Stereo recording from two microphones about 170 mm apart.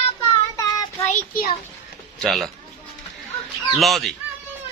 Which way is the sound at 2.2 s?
Centre (ahead or behind).